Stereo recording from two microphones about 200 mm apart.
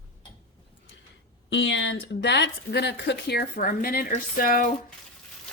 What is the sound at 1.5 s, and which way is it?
Speech, 65° left (ahead or behind).